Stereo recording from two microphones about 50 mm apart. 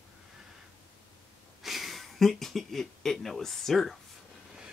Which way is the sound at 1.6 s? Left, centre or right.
Centre.